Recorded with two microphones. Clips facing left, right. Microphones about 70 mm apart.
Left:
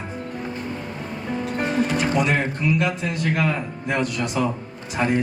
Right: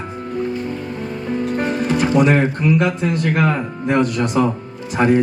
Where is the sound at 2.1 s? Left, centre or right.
Right.